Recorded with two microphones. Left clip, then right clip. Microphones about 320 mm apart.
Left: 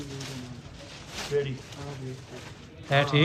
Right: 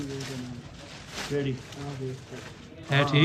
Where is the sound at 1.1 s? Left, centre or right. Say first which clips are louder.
Left 2 dB; centre.